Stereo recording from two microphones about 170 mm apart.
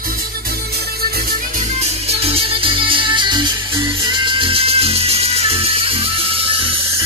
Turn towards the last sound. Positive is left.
turn(degrees=-30)  # may be behind; listen again after turning